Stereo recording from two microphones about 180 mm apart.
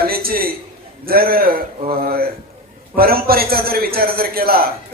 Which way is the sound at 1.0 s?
55° right (ahead or behind).